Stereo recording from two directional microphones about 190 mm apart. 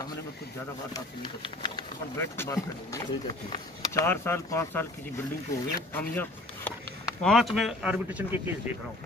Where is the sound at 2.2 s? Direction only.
15° left (ahead or behind).